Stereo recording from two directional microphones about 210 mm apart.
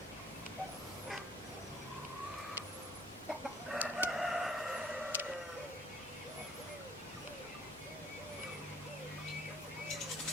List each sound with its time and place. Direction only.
3.7 s crowing: 5° right (ahead or behind)